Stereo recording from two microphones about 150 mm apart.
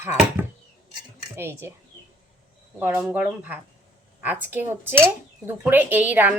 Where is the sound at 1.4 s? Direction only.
15° right (ahead or behind).